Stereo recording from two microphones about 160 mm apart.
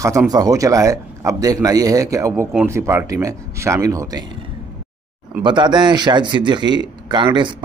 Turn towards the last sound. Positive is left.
turn(degrees=-30)  # may be behind; listen again after turning